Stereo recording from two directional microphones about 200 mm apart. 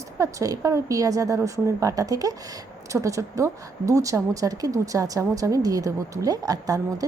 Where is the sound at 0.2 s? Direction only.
15° right (ahead or behind).